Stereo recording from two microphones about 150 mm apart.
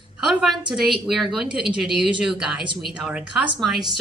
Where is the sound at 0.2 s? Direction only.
5° right (ahead or behind).